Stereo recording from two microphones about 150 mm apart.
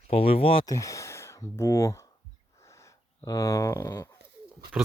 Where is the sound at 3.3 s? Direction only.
25° left (ahead or behind).